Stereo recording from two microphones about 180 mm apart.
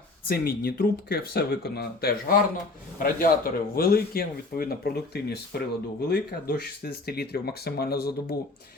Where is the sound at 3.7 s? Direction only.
55° left (ahead or behind).